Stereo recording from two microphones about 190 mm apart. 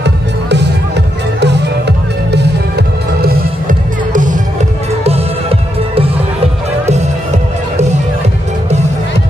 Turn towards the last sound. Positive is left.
turn(degrees=-35)  # may be behind; listen again after turning